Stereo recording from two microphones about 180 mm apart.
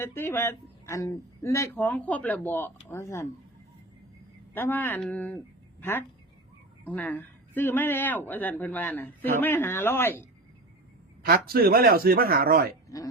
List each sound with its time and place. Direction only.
0.0 s speech: 10° left (ahead or behind)
4.5 s speech: 10° left (ahead or behind)
11.2 s speech: 55° right (ahead or behind)